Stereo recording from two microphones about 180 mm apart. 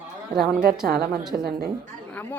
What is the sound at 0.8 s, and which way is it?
Speech, 60° right (ahead or behind).